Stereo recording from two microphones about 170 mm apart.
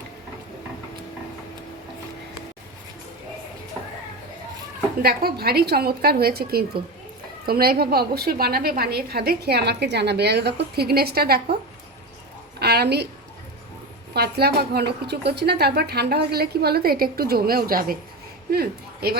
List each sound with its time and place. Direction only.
5.0 s a woman's voice: 65° right (ahead or behind)
12.5 s a sound: 70° right (ahead or behind)
14.1 s a woman's voice: 70° right (ahead or behind)